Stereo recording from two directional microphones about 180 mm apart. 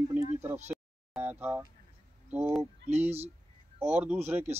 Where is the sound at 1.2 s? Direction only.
10° right (ahead or behind).